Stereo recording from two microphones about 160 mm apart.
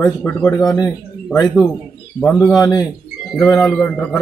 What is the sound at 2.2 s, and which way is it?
Speech, 10° left (ahead or behind).